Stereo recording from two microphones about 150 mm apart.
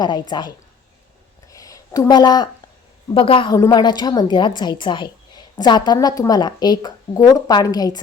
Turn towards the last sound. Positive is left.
turn(degrees=25)  # may be behind; listen again after turning